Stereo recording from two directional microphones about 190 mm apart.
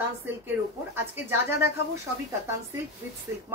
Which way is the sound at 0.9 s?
10° right (ahead or behind).